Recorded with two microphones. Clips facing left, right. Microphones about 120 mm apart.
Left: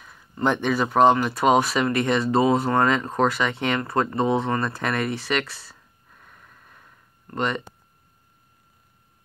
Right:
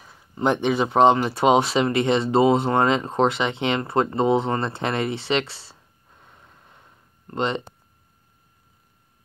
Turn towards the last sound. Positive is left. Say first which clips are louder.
# right 1 dB
turn(degrees=-25)  # may be behind; listen again after turning